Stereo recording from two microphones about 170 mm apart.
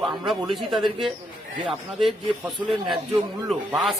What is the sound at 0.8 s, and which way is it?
Speech, 30° right (ahead or behind).